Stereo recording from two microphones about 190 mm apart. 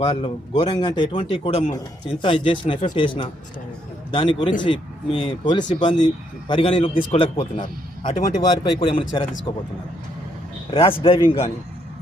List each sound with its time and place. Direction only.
0.0 s speech: 25° left (ahead or behind)
10.7 s speech: 30° left (ahead or behind)